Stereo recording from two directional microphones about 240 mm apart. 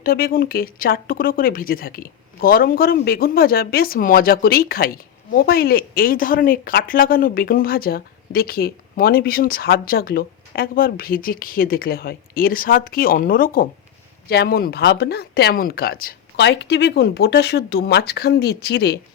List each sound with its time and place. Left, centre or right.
0.0 s a woman's voice: left